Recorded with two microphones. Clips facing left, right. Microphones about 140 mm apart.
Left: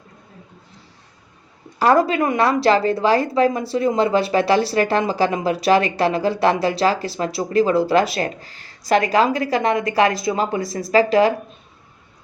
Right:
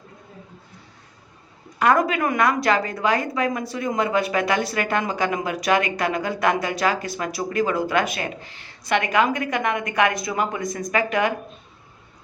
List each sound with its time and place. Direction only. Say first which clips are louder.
1.8 s a woman's voice: left 3 dB; 30° left (ahead or behind)